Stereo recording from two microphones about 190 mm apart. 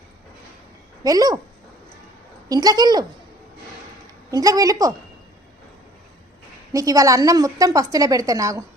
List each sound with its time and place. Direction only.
1.0 s a woman's voice: 20° right (ahead or behind)
2.5 s a woman's voice: 20° right (ahead or behind)
4.3 s a woman's voice: 20° right (ahead or behind)
6.7 s a woman's voice: 15° right (ahead or behind)